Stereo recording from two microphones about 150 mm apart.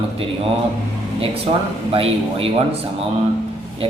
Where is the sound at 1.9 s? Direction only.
40° right (ahead or behind).